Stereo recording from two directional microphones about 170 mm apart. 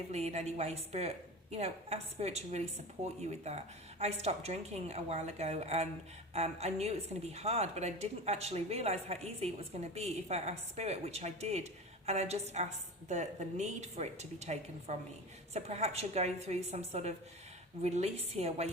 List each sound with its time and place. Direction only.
0.1 s speech: 40° right (ahead or behind)